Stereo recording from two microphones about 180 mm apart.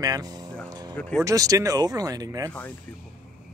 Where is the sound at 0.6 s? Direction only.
20° right (ahead or behind).